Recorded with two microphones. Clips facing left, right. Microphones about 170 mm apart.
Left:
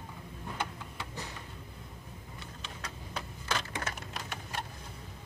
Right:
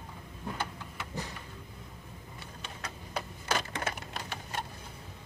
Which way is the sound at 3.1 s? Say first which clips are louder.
Right 3 dB; 10° right (ahead or behind).